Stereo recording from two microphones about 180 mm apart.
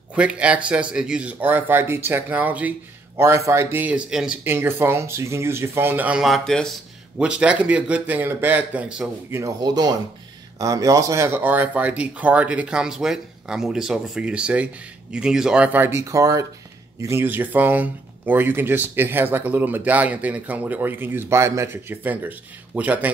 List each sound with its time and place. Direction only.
0.1 s speech: 5° right (ahead or behind)
9.4 s speech: 20° right (ahead or behind)